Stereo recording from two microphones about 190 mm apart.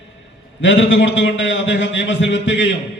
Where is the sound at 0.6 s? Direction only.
75° left (ahead or behind).